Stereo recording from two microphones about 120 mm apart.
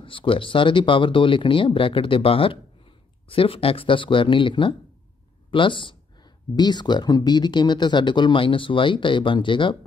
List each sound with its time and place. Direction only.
0.0 s speech: 45° left (ahead or behind)